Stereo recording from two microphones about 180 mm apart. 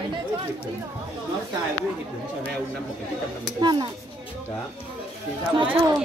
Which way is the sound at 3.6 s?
25° right (ahead or behind).